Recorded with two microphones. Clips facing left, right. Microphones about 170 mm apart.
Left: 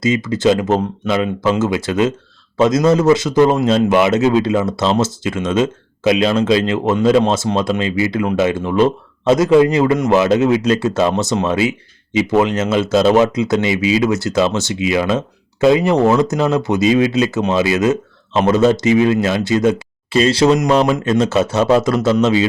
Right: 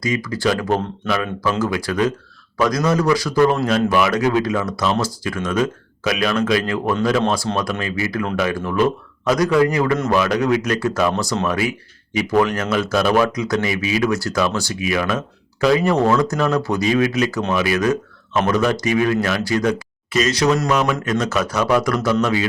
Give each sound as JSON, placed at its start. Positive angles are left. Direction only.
{"t": 0.0, "sound": "speech", "side_deg": 25}